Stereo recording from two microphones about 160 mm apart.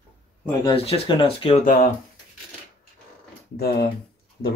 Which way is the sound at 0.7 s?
35° left (ahead or behind).